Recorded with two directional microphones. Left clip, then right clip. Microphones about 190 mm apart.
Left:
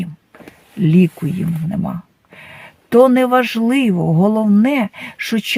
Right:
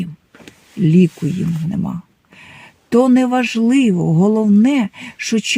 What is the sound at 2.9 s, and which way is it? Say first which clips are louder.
Speech: left 3 dB; 35° left (ahead or behind).